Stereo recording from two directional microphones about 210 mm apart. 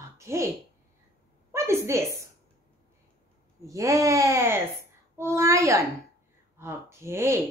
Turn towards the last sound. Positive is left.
turn(degrees=-10)  # may be behind; listen again after turning